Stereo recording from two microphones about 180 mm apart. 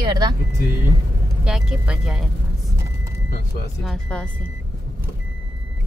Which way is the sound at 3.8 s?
5° left (ahead or behind).